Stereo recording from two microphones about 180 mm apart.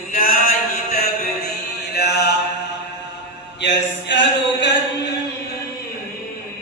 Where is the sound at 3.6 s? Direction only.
80° left.